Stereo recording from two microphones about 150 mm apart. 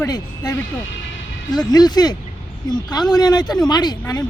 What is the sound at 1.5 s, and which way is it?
Speech, 25° left (ahead or behind).